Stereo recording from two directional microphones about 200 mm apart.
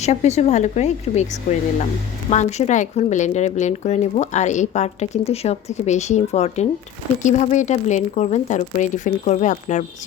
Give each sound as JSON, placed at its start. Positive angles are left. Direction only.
{"t": 0.0, "sound": "speech", "side_deg": 35}